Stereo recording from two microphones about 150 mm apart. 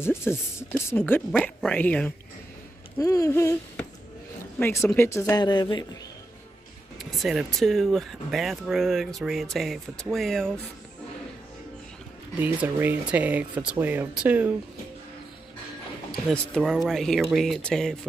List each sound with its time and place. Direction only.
0.0 s speech: 15° left (ahead or behind)
3.0 s speech: 20° left (ahead or behind)
4.6 s speech: 15° left (ahead or behind)
5.3 s speech: 30° left (ahead or behind)
7.0 s speech: centre (ahead or behind)
12.6 s speech: 15° right (ahead or behind)
16.3 s speech: centre (ahead or behind)